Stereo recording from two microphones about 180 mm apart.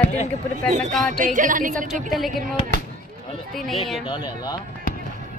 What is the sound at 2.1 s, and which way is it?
Speech, centre (ahead or behind).